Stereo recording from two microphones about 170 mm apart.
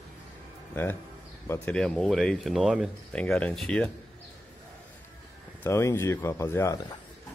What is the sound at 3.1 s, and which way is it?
Speech, 5° left (ahead or behind).